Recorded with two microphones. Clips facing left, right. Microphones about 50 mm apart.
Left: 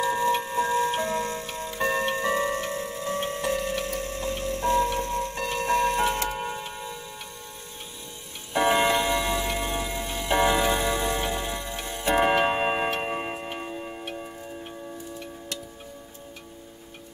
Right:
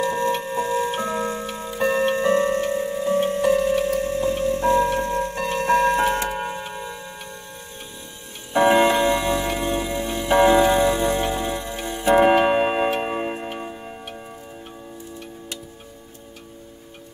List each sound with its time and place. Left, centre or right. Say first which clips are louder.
0.0 s tick-tock: right 2 dB; centre; by 5.3 s right
5.3 s music: right 5 dB; centre
5.8 s tick-tock: right 3 dB; centre
8.5 s clock: right 5 dB; centre
12.2 s tick-tock: right 5 dB; centre